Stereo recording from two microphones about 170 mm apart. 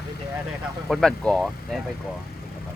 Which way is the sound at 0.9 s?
5° left (ahead or behind).